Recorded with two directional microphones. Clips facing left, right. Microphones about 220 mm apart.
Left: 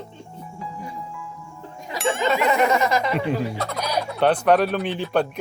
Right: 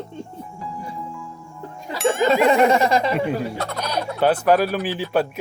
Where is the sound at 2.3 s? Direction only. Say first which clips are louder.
Right 4 dB; 30° right (ahead or behind).